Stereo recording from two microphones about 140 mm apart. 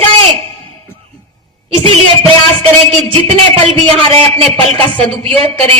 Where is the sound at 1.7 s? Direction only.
40° right (ahead or behind).